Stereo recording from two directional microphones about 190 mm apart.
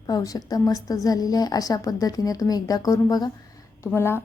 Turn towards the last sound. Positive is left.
turn(degrees=10)  # may be behind; listen again after turning